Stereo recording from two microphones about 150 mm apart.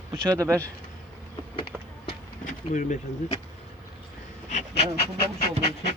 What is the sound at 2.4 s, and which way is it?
Bee, 60° left (ahead or behind).